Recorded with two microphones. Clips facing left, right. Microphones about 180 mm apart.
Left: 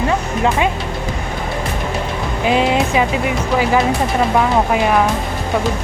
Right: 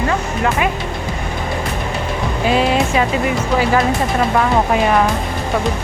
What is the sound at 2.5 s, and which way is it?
Speech, 20° left (ahead or behind).